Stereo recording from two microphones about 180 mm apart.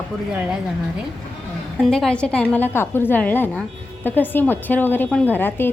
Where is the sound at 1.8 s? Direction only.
Centre (ahead or behind).